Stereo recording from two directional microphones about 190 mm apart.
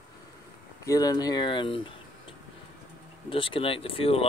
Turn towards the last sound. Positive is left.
turn(degrees=30)  # may be behind; listen again after turning